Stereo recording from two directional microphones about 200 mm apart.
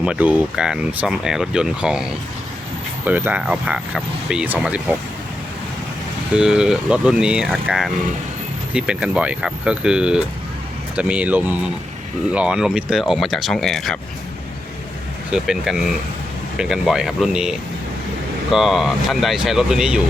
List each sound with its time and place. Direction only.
0.0 s speech: 5° right (ahead or behind)
6.3 s speech: 5° right (ahead or behind)
15.3 s speech: 5° right (ahead or behind)